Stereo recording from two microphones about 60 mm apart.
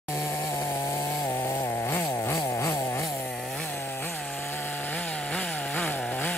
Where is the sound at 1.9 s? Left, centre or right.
Left.